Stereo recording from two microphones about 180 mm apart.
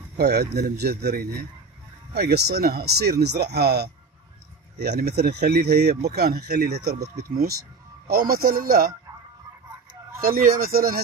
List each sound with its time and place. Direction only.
0.2 s speech: 65° right (ahead or behind)
10.2 s speech: 55° right (ahead or behind)